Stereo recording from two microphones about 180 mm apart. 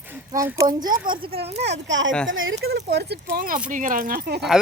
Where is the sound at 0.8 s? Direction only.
20° right (ahead or behind).